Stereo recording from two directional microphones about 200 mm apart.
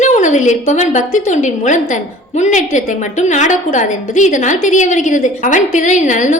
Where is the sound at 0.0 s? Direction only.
40° left (ahead or behind).